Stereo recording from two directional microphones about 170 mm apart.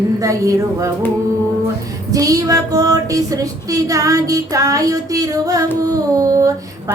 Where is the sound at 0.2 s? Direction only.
20° right (ahead or behind).